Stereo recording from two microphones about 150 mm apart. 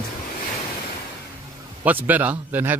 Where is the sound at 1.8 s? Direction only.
10° right (ahead or behind).